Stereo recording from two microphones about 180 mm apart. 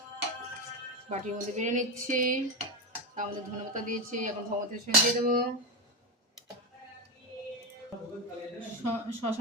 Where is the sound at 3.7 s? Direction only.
45° right (ahead or behind).